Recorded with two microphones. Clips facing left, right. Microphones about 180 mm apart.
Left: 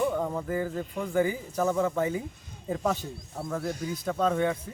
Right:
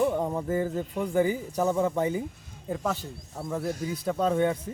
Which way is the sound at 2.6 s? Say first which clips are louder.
Left 1 dB; centre (ahead or behind).